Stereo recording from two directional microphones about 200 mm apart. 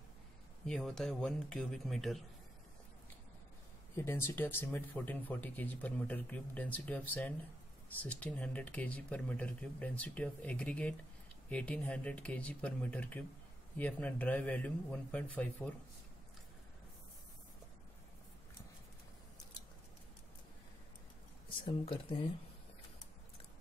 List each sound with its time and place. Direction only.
0.7 s speech: centre (ahead or behind)
3.9 s speech: 10° left (ahead or behind)
21.5 s speech: 25° left (ahead or behind)